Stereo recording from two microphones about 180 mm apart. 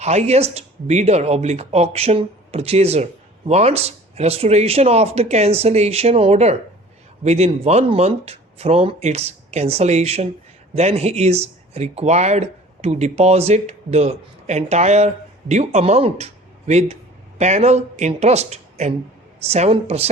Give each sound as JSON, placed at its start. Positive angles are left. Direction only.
{"t": 0.0, "sound": "speech", "side_deg": -35}